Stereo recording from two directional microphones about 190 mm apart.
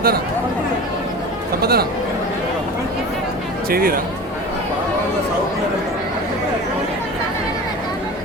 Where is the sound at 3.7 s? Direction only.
50° right (ahead or behind).